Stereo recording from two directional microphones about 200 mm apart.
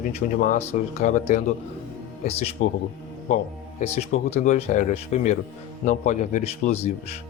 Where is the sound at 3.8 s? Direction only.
30° left (ahead or behind).